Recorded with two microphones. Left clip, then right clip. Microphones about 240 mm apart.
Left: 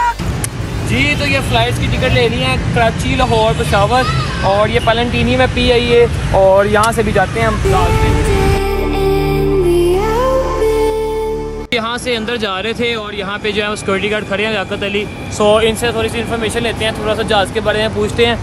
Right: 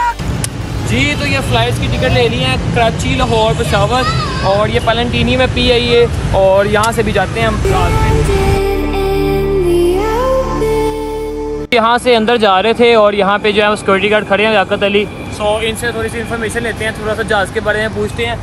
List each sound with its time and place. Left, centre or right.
0.9 s speech: centre
6.3 s speech: centre
6.7 s speech: centre
7.2 s speech: centre
9.1 s music: centre
11.7 s speech: centre
15.5 s speech: left
16.6 s speech: centre